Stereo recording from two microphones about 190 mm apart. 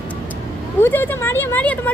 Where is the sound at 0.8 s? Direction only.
10° left (ahead or behind).